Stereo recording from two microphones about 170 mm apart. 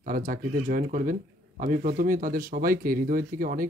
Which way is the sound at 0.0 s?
55° right (ahead or behind).